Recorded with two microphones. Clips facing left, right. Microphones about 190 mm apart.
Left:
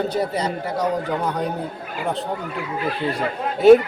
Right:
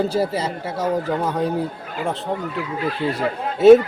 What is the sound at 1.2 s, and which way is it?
Speech, 5° right (ahead or behind).